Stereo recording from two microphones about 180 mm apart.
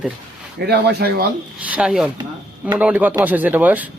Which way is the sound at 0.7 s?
70° right (ahead or behind).